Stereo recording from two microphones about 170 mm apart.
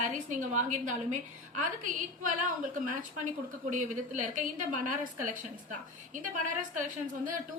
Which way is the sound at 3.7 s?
45° right (ahead or behind).